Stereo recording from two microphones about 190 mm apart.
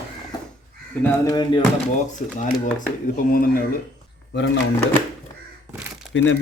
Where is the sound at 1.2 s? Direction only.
20° left (ahead or behind).